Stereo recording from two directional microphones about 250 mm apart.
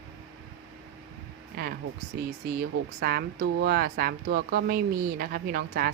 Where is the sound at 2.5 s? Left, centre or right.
Right.